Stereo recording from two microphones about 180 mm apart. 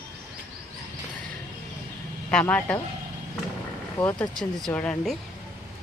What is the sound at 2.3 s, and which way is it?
Speech, 5° left (ahead or behind).